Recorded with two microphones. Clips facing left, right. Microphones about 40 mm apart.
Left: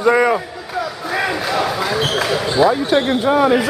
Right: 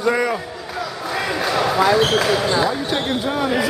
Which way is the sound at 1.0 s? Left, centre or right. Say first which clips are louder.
Left 3 dB; centre.